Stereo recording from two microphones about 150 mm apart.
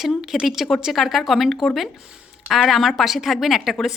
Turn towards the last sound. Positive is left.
turn(degrees=0)  # may be behind; listen again after turning